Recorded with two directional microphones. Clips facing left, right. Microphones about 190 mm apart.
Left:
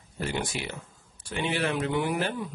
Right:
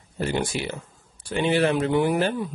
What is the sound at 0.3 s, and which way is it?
Speech, 30° right (ahead or behind).